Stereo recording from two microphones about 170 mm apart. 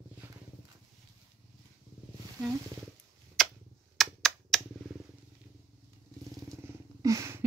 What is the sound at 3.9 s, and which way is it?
Computer keyboard, centre (ahead or behind).